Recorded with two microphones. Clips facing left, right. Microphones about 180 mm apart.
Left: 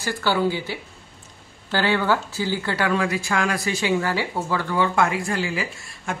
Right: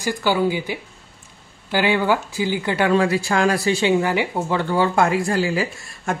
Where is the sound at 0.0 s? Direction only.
15° right (ahead or behind).